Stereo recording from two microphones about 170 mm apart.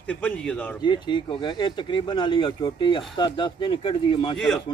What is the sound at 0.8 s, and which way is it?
Speech, 25° left (ahead or behind).